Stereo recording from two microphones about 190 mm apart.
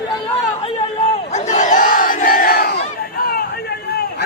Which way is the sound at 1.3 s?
35° left (ahead or behind).